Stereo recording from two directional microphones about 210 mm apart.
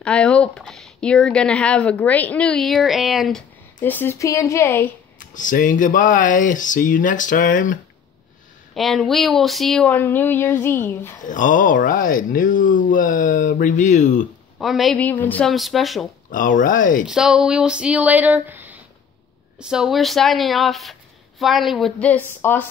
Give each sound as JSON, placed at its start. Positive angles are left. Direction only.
{"t": 0.0, "sound": "speech", "side_deg": 5}
{"t": 5.2, "sound": "speech", "side_deg": 40}
{"t": 8.7, "sound": "speech", "side_deg": 0}
{"t": 11.2, "sound": "speech", "side_deg": 40}
{"t": 14.6, "sound": "speech", "side_deg": 0}
{"t": 16.3, "sound": "speech", "side_deg": 40}
{"t": 17.0, "sound": "speech", "side_deg": -5}